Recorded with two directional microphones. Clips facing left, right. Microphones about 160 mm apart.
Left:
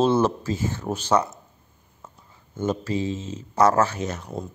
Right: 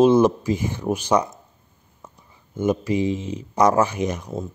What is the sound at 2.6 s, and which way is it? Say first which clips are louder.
Speech: right 4 dB; 15° right (ahead or behind).